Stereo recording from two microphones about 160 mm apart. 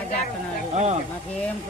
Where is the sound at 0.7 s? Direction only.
40° right (ahead or behind).